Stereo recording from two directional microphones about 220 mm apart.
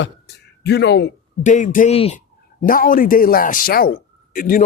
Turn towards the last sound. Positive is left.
turn(degrees=40)  # may be behind; listen again after turning